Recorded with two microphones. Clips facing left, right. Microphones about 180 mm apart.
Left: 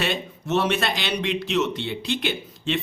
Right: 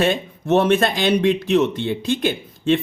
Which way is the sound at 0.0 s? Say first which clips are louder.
Right 7 dB; 50° right (ahead or behind).